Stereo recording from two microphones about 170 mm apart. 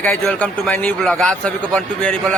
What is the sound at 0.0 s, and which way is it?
A man's voice, 10° left (ahead or behind).